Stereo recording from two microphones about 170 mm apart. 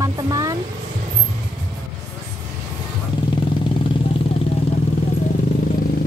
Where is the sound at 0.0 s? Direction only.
20° right (ahead or behind).